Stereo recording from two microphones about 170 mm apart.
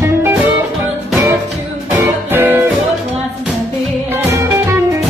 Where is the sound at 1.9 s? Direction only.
10° right (ahead or behind).